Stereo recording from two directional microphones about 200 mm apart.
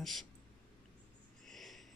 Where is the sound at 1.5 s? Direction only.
Centre (ahead or behind).